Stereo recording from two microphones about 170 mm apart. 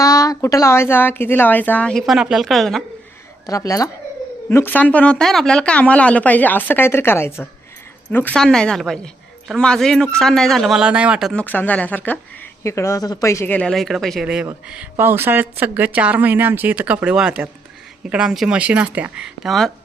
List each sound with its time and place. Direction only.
0.0 s speech: 20° left (ahead or behind); by 2.8 s centre (ahead or behind)
3.4 s a man's voice: 20° left (ahead or behind); by 11.4 s centre (ahead or behind)
11.4 s a man's voice: 10° left (ahead or behind)